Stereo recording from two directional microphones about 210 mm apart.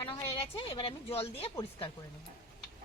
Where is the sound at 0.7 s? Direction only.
25° left (ahead or behind).